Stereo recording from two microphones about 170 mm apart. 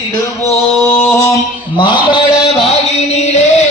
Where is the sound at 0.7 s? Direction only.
10° left (ahead or behind); by 2.2 s 30° left (ahead or behind).